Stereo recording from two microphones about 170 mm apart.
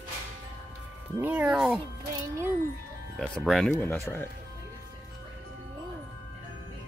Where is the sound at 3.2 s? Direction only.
5° left (ahead or behind).